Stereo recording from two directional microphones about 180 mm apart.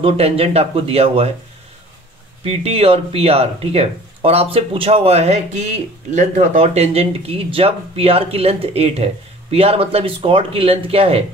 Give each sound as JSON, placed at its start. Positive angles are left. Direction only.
{"t": 0.0, "sound": "speech", "side_deg": -35}
{"t": 2.4, "sound": "speech", "side_deg": -35}